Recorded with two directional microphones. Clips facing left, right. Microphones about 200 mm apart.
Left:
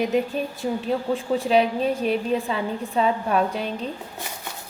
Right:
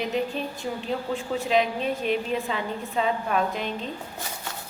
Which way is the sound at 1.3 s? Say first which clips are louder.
Left 3 dB; 35° left (ahead or behind).